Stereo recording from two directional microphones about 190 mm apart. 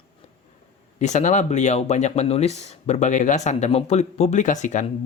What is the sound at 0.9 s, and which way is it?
Speech, 40° left (ahead or behind).